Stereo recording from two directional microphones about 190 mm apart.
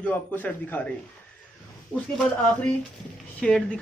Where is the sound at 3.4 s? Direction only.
5° left (ahead or behind).